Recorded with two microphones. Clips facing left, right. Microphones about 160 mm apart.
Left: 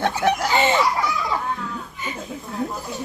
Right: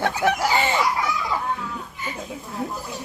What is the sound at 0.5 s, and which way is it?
Speech, 20° left (ahead or behind).